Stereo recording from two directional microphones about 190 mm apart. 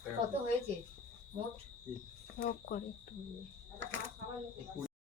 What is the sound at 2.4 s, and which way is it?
Speech, 50° left (ahead or behind).